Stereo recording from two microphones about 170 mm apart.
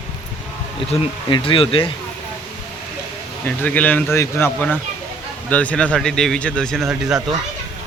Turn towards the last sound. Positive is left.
turn(degrees=-5)  # may be behind; listen again after turning